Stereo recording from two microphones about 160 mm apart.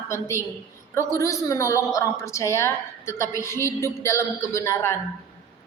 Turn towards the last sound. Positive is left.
turn(degrees=15)  # may be behind; listen again after turning